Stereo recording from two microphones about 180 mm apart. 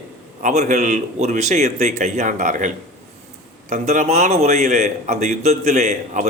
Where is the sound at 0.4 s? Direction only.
40° right (ahead or behind).